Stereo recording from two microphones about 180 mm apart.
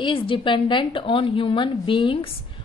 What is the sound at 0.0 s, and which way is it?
A woman's voice, 30° left (ahead or behind).